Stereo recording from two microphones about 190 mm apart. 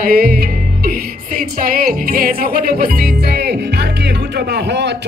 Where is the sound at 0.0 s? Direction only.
50° right (ahead or behind).